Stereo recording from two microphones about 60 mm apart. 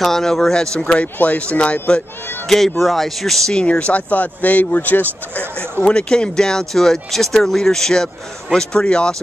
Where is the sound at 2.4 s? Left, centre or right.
Centre.